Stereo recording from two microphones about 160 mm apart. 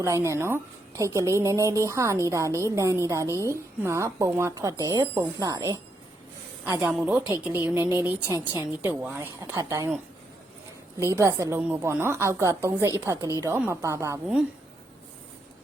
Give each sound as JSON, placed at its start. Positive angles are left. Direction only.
{"t": 0.0, "sound": "a woman's voice", "side_deg": -20}
{"t": 11.0, "sound": "a woman's voice", "side_deg": -15}